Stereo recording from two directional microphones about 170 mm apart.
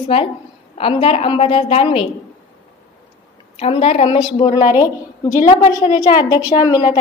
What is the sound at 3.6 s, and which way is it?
A woman's voice, 35° left (ahead or behind).